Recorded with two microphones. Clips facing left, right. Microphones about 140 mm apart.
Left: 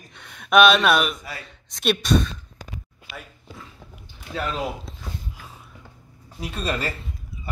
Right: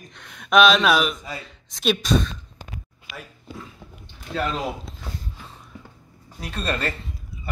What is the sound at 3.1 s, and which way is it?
Speech, 35° left (ahead or behind).